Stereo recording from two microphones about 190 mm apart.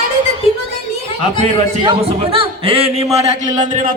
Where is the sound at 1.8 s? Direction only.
25° right (ahead or behind).